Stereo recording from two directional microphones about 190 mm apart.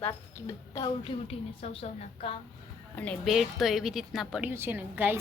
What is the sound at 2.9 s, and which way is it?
A woman's voice, 5° left (ahead or behind).